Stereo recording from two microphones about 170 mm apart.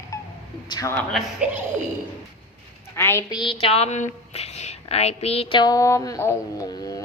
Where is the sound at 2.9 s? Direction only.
15° left (ahead or behind).